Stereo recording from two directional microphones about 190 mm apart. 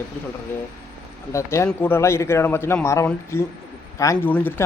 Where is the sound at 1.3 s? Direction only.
15° left (ahead or behind).